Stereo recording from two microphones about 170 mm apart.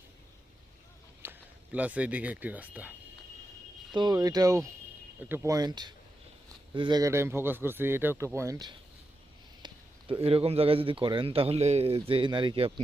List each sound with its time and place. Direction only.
1.2 s speech: 10° right (ahead or behind)
3.9 s speech: 25° right (ahead or behind)
9.6 s speech: 30° right (ahead or behind)